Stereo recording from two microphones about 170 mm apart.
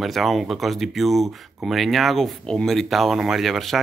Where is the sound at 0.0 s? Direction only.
Centre (ahead or behind).